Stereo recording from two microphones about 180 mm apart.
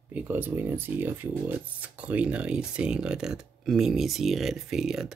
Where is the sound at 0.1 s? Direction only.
10° right (ahead or behind).